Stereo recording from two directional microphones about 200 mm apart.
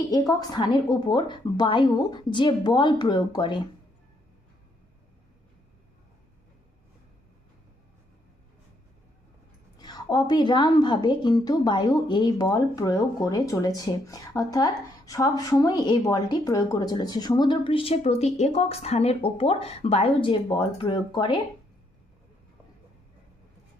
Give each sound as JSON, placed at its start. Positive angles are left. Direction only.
{"t": 0.1, "sound": "a woman's voice", "side_deg": 20}
{"t": 9.7, "sound": "a woman's voice", "side_deg": 20}